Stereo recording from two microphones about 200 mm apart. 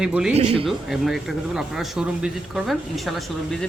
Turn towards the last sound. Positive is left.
turn(degrees=0)  # may be behind; listen again after turning